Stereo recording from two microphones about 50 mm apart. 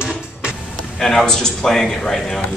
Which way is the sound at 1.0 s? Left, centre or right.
Centre.